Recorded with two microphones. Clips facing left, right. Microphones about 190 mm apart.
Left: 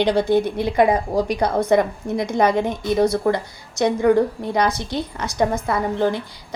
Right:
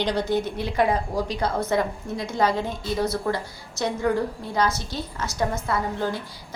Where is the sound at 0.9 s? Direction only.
15° left (ahead or behind).